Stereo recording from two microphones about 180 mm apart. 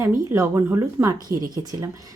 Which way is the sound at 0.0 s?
15° right (ahead or behind).